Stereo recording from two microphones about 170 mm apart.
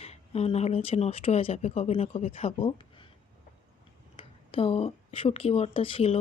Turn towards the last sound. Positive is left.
turn(degrees=35)  # may be behind; listen again after turning